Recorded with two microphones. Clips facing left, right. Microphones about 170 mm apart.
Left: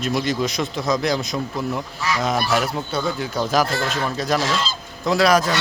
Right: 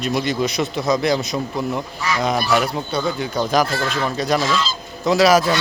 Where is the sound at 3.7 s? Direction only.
45° left (ahead or behind).